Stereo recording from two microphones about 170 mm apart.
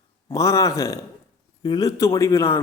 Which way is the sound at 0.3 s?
20° left (ahead or behind).